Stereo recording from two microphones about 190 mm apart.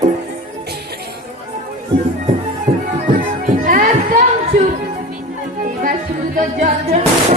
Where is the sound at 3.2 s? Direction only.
45° right (ahead or behind).